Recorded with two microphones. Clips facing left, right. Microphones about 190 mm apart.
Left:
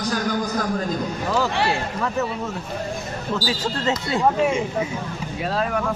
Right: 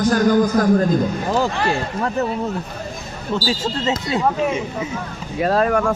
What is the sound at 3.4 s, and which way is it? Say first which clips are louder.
Speech: right 5 dB; 15° left (ahead or behind).